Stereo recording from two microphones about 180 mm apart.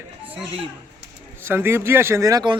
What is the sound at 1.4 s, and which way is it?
Speech, 15° right (ahead or behind).